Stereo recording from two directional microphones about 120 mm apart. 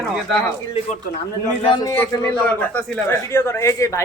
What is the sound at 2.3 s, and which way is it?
Speech, 10° left (ahead or behind).